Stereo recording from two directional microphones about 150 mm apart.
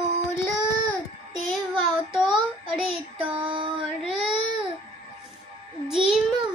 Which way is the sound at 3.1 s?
35° right (ahead or behind).